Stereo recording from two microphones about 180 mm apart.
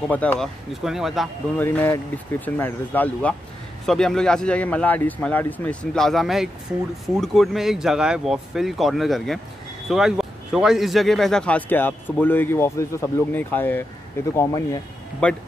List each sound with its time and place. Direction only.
0.1 s speech: 10° left (ahead or behind)
0.8 s speech: centre (ahead or behind)
1.6 s speech: 10° left (ahead or behind)
15.2 s speech: 5° left (ahead or behind)